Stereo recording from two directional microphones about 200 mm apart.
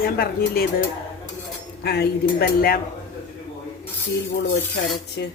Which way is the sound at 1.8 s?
55° left (ahead or behind).